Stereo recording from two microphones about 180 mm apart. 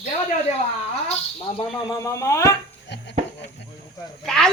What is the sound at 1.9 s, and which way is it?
Speech, 15° left (ahead or behind).